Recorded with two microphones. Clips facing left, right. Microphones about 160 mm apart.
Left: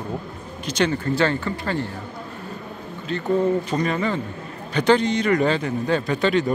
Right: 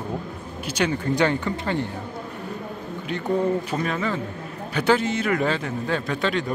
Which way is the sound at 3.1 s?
15° right (ahead or behind).